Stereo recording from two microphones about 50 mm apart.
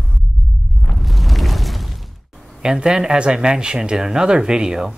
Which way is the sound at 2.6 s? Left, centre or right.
Centre.